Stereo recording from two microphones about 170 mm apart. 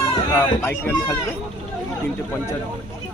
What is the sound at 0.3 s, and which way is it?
Speech, 10° left (ahead or behind).